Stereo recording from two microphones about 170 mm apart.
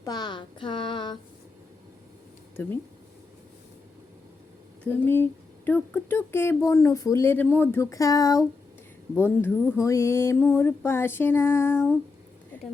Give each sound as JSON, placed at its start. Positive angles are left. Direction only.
{"t": 0.0, "sound": "speech", "side_deg": 25}
{"t": 2.6, "sound": "speech", "side_deg": 10}
{"t": 4.8, "sound": "speech", "side_deg": 10}